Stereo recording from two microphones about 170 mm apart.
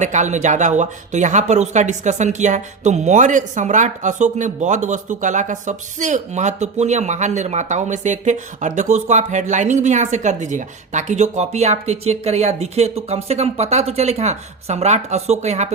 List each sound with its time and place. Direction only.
0.0 s speech: 45° right (ahead or behind)